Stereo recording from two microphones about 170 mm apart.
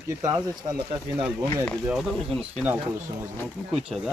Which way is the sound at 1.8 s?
5° right (ahead or behind).